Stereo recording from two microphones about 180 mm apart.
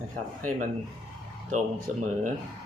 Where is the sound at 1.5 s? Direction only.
45° right (ahead or behind).